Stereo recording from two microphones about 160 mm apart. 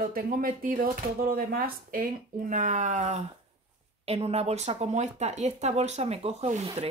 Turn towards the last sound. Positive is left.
turn(degrees=-40)  # may be behind; listen again after turning